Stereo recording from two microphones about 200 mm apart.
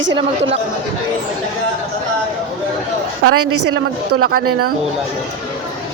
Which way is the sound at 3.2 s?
70° right (ahead or behind).